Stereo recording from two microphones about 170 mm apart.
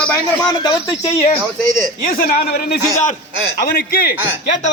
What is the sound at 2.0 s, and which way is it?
Speech, 60° left (ahead or behind).